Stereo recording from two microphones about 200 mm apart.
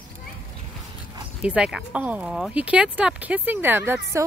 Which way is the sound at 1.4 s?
5° right (ahead or behind).